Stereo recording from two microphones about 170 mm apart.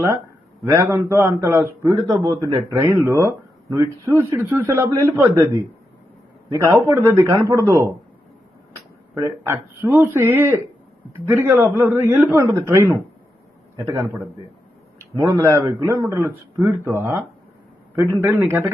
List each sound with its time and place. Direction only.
0.6 s a man's voice: 15° right (ahead or behind)
6.7 s a man's voice: 15° right (ahead or behind)
9.5 s a man's voice: 10° right (ahead or behind)
14.9 s a sound: 15° right (ahead or behind)
15.4 s a man's voice: 15° right (ahead or behind)